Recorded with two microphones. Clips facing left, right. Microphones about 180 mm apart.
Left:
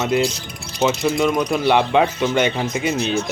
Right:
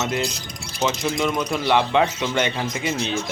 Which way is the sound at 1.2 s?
20° left (ahead or behind).